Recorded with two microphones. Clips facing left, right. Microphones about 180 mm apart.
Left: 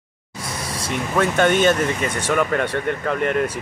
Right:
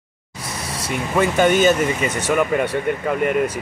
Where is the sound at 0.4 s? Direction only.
30° left (ahead or behind).